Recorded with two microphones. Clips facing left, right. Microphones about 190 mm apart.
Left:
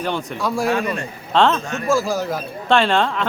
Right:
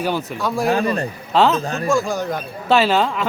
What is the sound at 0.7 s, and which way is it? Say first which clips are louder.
Speech: right 2 dB; 35° right (ahead or behind).